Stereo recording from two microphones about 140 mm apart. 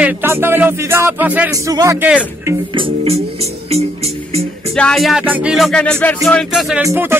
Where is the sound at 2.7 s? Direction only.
35° right (ahead or behind).